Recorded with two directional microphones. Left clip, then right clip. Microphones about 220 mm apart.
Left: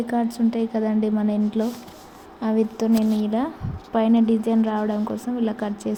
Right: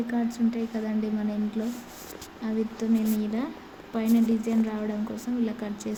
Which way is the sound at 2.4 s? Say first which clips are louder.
Left 8 dB; 20° left (ahead or behind).